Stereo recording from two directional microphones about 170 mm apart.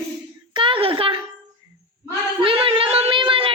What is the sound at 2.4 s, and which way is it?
Speech, 35° right (ahead or behind).